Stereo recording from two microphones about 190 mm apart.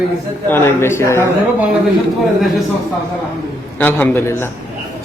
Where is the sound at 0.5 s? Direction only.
10° left (ahead or behind).